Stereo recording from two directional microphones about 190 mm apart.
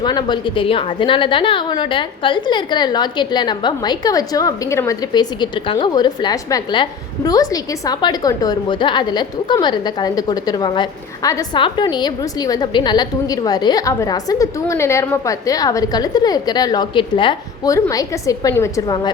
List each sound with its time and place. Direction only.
0.0 s a woman's voice: 20° left (ahead or behind)